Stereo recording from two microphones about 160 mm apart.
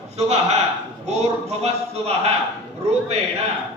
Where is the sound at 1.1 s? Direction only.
40° right (ahead or behind).